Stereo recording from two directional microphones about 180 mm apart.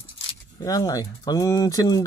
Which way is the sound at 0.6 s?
20° left (ahead or behind).